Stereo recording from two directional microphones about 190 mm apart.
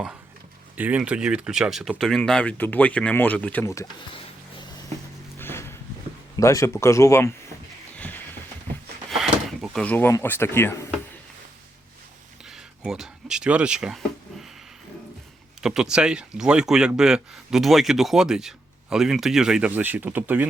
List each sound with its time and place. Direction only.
0.8 s speech: 5° right (ahead or behind); by 3.8 s 15° left (ahead or behind)
5.4 s horse: 10° left (ahead or behind)
6.3 s speech: 15° left (ahead or behind)
9.0 s a sound: centre (ahead or behind)
12.5 s speech: 5° right (ahead or behind)
15.6 s speech: 5° right (ahead or behind)